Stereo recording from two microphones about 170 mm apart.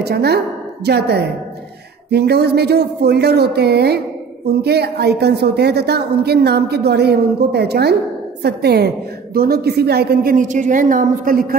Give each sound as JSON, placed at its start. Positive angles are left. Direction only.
{"t": 0.0, "sound": "a woman's voice", "side_deg": -70}